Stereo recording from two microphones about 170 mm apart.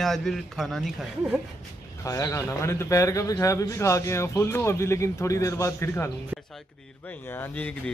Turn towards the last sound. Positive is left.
turn(degrees=10)  # may be behind; listen again after turning